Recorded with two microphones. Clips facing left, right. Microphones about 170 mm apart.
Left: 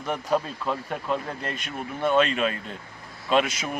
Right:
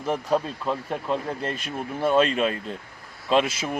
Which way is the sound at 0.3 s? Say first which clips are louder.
Even; 35° right (ahead or behind).